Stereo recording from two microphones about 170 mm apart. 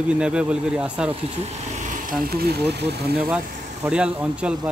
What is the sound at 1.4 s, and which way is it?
Speech, 50° right (ahead or behind).